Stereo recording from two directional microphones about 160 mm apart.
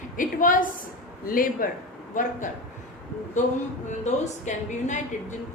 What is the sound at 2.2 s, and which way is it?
Speech, 50° left (ahead or behind).